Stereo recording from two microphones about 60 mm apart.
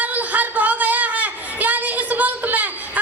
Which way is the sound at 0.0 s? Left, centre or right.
Right.